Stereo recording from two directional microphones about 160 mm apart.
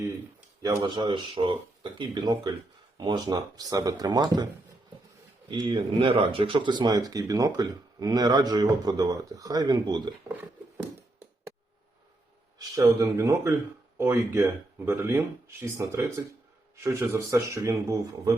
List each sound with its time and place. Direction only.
0.6 s speech: 20° right (ahead or behind)
5.5 s speech: 30° right (ahead or behind)
12.5 s speech: 20° right (ahead or behind)